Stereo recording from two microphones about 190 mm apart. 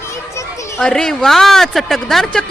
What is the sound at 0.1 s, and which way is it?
Children playing, 15° left (ahead or behind).